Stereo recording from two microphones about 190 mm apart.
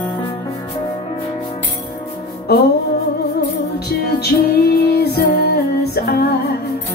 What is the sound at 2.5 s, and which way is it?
Music, 55° left (ahead or behind).